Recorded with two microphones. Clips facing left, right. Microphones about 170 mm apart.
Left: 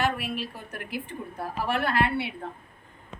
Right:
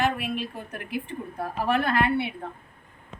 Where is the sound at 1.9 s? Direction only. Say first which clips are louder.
Right 2 dB; 55° right (ahead or behind).